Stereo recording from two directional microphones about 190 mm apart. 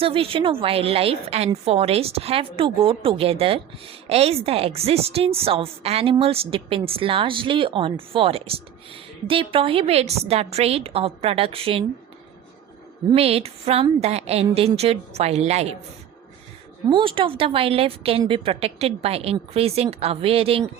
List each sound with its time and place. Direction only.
0.0 s a woman's voice: 30° right (ahead or behind)
13.1 s a woman's voice: 30° right (ahead or behind)
16.9 s a woman's voice: 25° right (ahead or behind)